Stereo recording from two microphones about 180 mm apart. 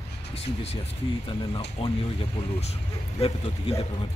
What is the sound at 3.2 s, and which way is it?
Speech, 35° left (ahead or behind).